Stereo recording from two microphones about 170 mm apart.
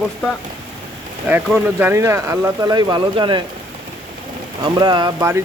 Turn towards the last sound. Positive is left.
turn(degrees=-25)  # may be behind; listen again after turning